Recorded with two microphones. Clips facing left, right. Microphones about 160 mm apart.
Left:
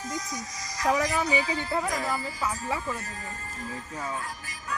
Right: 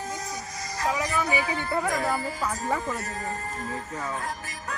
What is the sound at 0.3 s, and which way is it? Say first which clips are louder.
Music: right 2 dB; 55° right (ahead or behind).